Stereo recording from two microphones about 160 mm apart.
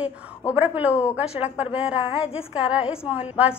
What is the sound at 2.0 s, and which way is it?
Speech, 35° left (ahead or behind).